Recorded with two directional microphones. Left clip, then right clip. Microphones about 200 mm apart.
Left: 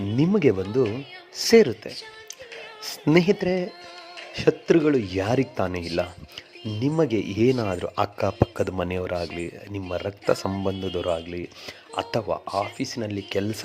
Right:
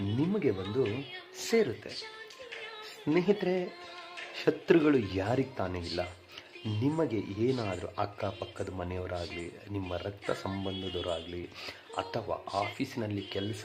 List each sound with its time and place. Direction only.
0.2 s speech: 40° left (ahead or behind)
1.5 s speech: 30° left (ahead or behind)
3.0 s speech: 45° left (ahead or behind)
3.2 s speech: 25° left (ahead or behind)
6.8 s speech: 30° left (ahead or behind)
10.5 s speech: 45° left (ahead or behind)
11.0 s speech: 30° left (ahead or behind)